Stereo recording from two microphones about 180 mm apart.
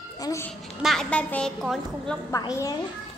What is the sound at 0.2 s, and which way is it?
Speech, 15° left (ahead or behind).